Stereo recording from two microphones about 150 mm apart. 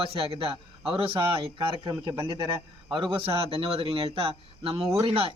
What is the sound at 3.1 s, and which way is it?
A man's voice, 40° right (ahead or behind).